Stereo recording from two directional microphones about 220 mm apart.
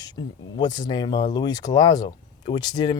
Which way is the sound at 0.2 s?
25° left (ahead or behind).